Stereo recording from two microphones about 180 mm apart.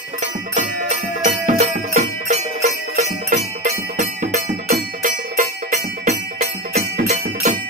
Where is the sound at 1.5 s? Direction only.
40° right (ahead or behind).